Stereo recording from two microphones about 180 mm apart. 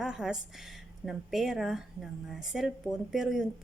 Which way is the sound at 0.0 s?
5° right (ahead or behind).